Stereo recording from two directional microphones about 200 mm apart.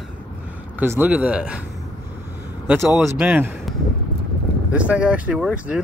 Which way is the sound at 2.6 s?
10° right (ahead or behind).